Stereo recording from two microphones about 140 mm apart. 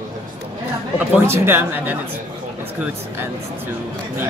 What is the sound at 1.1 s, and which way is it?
Speech, 15° right (ahead or behind).